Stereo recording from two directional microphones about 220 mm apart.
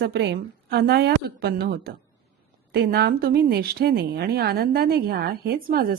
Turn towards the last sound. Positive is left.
turn(degrees=-45)  # may be behind; listen again after turning